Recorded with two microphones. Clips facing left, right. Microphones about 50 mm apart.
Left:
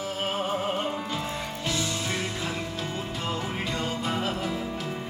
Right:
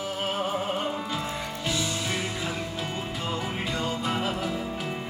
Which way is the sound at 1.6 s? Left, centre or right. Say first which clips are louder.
Even; centre.